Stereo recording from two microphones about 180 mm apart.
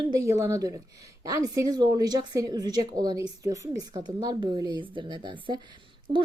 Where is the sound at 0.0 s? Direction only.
20° right (ahead or behind).